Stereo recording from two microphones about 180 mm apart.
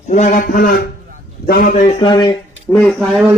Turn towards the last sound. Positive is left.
turn(degrees=5)  # may be behind; listen again after turning